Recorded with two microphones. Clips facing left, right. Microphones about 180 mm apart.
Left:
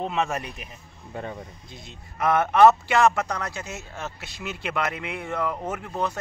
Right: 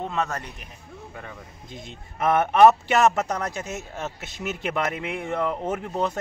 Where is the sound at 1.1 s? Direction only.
30° left (ahead or behind).